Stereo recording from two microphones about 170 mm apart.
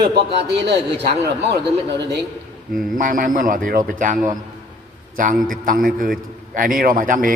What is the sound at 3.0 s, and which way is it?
A man's voice, 55° right (ahead or behind).